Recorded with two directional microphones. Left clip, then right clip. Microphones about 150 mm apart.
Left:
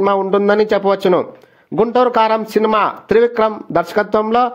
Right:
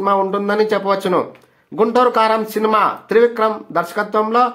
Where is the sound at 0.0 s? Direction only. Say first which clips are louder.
Left 3 dB; 45° left (ahead or behind).